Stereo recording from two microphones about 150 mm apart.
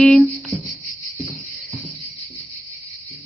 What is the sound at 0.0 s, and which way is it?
Music, centre (ahead or behind).